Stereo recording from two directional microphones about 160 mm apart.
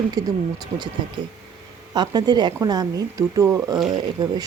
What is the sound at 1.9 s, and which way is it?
Speech, 25° right (ahead or behind).